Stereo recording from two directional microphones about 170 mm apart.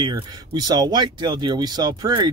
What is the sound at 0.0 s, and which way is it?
Speech, 25° right (ahead or behind).